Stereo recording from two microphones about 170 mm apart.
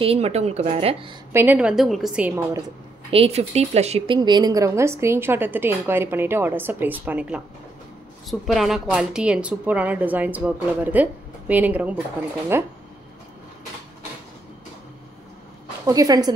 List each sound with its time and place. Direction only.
0.0 s speech: 35° right (ahead or behind)
1.3 s a woman's voice: 10° right (ahead or behind)
3.1 s a woman's voice: 35° right (ahead or behind); by 12.7 s 15° right (ahead or behind)
15.8 s a woman's voice: 20° right (ahead or behind)